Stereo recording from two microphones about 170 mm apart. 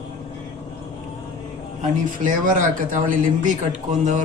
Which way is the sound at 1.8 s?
50° right (ahead or behind).